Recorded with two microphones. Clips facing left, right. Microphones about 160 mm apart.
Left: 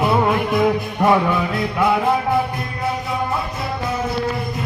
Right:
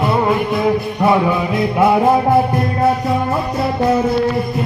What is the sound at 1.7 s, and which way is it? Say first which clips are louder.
Music: right 5 dB; 30° right (ahead or behind).